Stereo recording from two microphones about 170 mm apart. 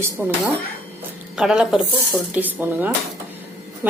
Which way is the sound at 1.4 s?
5° right (ahead or behind).